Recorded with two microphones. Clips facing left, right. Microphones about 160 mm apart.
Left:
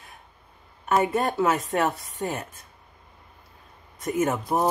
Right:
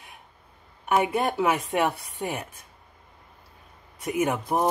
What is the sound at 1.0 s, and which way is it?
Speech, 15° right (ahead or behind).